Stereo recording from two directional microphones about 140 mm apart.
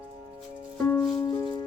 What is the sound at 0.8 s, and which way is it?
Music, 15° left (ahead or behind).